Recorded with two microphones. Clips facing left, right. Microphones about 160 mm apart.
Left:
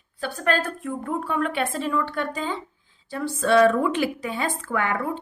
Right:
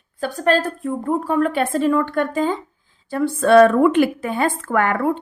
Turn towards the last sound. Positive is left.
turn(degrees=-55)  # may be behind; listen again after turning